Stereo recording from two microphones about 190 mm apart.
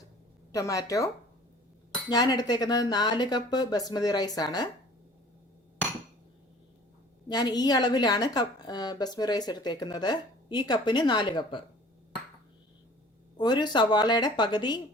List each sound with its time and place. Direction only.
0.5 s a woman's voice: 15° left (ahead or behind)
7.3 s a woman's voice: 20° left (ahead or behind)
13.3 s a woman's voice: 20° left (ahead or behind)